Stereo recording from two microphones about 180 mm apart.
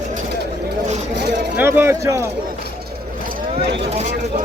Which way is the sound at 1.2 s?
70° right (ahead or behind).